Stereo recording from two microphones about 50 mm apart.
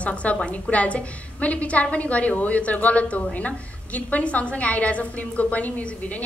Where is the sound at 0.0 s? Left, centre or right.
Left.